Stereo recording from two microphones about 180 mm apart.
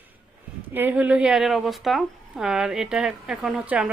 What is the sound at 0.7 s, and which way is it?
Speech, 10° right (ahead or behind).